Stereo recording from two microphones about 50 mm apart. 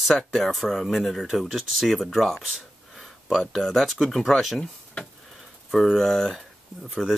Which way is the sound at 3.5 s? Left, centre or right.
Centre.